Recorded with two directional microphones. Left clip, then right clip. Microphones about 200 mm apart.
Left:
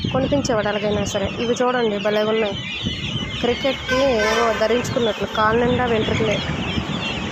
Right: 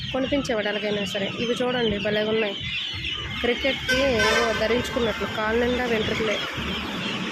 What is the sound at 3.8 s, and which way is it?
Speech, 15° left (ahead or behind).